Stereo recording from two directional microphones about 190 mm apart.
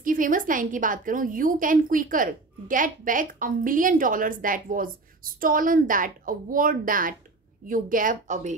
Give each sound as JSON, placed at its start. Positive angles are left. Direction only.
{"t": 0.0, "sound": "a woman's voice", "side_deg": -45}